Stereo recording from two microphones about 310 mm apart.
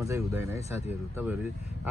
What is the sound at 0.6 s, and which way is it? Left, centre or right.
Speech, left.